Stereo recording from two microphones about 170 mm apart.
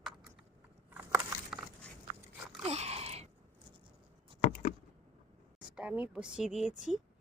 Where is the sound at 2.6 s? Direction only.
40° right (ahead or behind).